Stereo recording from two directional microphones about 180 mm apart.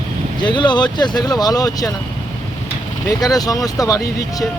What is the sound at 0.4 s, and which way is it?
Speech, 25° left (ahead or behind).